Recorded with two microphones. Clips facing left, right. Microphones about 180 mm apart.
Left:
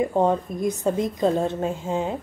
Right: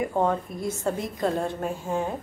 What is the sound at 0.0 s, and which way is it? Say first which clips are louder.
A woman's voice: left 4 dB; 20° left (ahead or behind).